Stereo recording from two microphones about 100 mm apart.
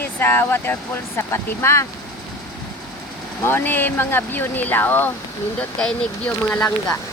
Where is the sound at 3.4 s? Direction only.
25° left (ahead or behind).